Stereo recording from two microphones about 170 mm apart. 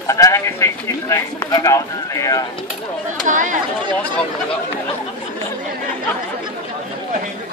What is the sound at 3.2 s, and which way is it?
Speech, 50° right (ahead or behind).